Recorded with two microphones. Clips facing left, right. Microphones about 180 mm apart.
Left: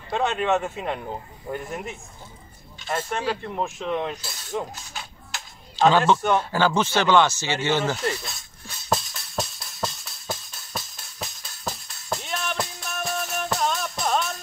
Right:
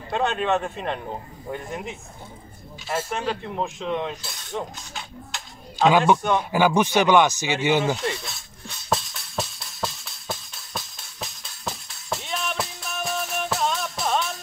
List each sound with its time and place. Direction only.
0.1 s speech: centre (ahead or behind)
5.8 s speech: 10° right (ahead or behind)
7.9 s music: centre (ahead or behind)